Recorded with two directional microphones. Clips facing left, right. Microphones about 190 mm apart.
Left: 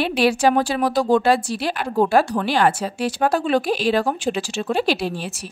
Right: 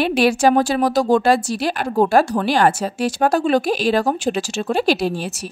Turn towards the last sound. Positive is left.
turn(degrees=-40)  # may be behind; listen again after turning